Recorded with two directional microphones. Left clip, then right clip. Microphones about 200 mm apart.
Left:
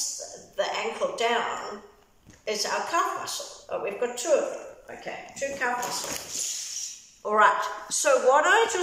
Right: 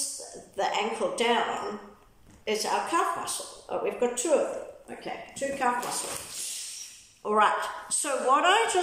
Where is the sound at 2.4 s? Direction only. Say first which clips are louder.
Even; 15° right (ahead or behind).